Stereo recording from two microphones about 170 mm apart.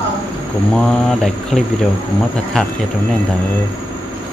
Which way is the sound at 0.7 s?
5° left (ahead or behind).